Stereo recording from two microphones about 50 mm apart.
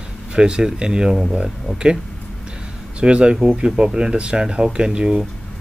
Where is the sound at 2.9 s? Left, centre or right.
Right.